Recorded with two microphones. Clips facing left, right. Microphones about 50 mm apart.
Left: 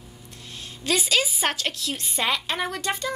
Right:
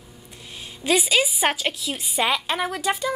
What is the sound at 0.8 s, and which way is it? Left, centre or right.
A woman's voice, centre.